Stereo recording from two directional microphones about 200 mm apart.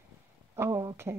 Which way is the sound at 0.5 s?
15° right (ahead or behind).